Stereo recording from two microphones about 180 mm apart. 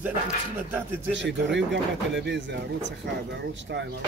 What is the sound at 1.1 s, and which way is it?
Speech, 85° right.